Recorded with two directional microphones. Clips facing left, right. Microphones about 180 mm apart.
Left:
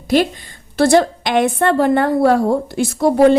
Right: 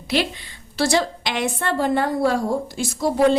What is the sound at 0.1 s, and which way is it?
A woman's voice, 45° left (ahead or behind).